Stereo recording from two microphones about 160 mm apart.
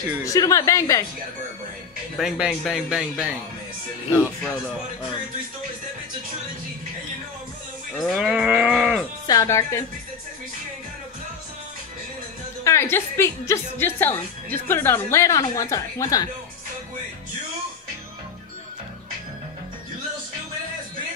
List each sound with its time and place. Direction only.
0.2 s a woman's voice: 20° left (ahead or behind)
2.1 s speech: 5° right (ahead or behind)
8.0 s speech: centre (ahead or behind)
9.3 s a woman's voice: 20° left (ahead or behind)
12.6 s a woman's voice: 15° left (ahead or behind)